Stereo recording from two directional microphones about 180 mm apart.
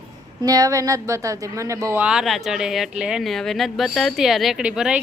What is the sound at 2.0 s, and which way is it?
Speech, centre (ahead or behind).